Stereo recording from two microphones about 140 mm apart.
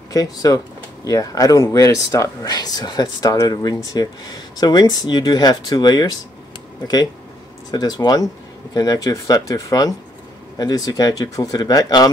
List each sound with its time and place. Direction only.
0.1 s speech: 25° left (ahead or behind)
7.7 s speech: 30° left (ahead or behind)